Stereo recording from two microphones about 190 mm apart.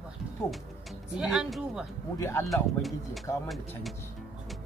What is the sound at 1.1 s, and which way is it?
Speech, 5° right (ahead or behind).